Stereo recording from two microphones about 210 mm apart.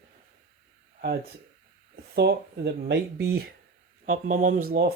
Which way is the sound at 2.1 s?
50° right (ahead or behind).